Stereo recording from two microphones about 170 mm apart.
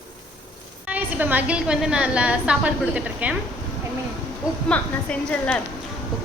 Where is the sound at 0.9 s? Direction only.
10° right (ahead or behind).